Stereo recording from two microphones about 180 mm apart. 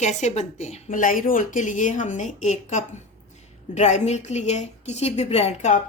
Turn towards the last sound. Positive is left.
turn(degrees=40)  # may be behind; listen again after turning